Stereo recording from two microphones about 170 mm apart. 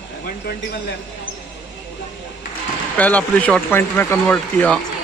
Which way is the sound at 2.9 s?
10° left (ahead or behind).